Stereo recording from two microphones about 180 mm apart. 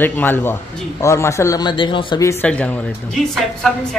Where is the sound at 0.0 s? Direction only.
10° left (ahead or behind); by 2.2 s 25° left (ahead or behind).